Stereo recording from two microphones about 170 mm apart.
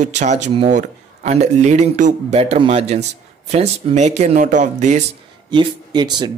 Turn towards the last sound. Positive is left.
turn(degrees=-25)  # may be behind; listen again after turning